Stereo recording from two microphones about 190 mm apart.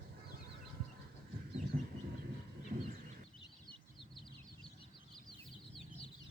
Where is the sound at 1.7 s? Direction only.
40° right (ahead or behind).